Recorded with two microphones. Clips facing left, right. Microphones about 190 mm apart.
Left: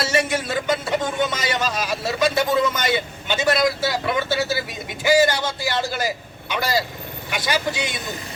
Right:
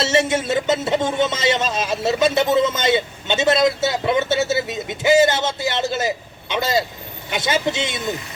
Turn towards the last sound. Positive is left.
turn(degrees=-25)  # may be behind; listen again after turning